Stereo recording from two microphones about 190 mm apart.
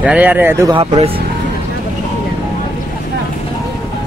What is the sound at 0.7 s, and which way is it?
Speech, 35° right (ahead or behind).